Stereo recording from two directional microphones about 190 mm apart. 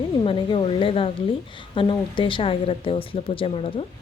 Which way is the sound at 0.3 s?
25° left (ahead or behind).